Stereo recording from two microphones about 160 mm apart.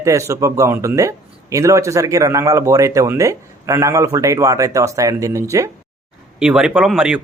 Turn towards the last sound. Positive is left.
turn(degrees=-5)  # may be behind; listen again after turning